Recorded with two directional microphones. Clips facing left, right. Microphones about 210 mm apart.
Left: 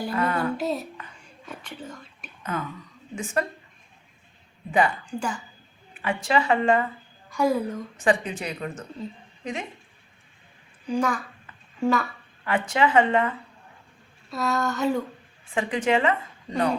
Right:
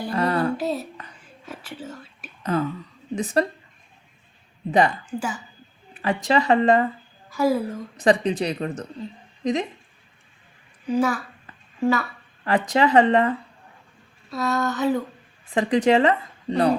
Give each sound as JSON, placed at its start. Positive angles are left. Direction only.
{"t": 0.1, "sound": "music", "side_deg": -35}
{"t": 0.5, "sound": "a sound", "side_deg": 0}
{"t": 1.5, "sound": "whispering", "side_deg": -5}
{"t": 2.4, "sound": "speech", "side_deg": -35}
{"t": 4.7, "sound": "speech", "side_deg": -40}
{"t": 5.0, "sound": "a sound", "side_deg": -5}
{"t": 5.9, "sound": "speech", "side_deg": -35}
{"t": 7.3, "sound": "a woman's voice", "side_deg": -5}
{"t": 7.9, "sound": "a woman's voice", "side_deg": -35}
{"t": 10.8, "sound": "a sound", "side_deg": -5}
{"t": 12.5, "sound": "speech", "side_deg": -35}
{"t": 14.3, "sound": "a sound", "side_deg": 0}
{"t": 15.5, "sound": "speech", "side_deg": -40}